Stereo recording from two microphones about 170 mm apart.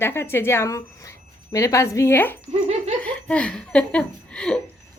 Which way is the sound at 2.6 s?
35° right (ahead or behind).